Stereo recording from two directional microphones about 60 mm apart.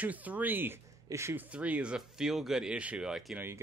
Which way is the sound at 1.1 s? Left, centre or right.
Right.